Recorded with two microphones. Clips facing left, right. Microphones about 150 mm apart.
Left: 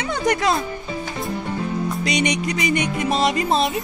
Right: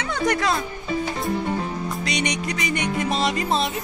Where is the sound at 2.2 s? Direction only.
5° left (ahead or behind).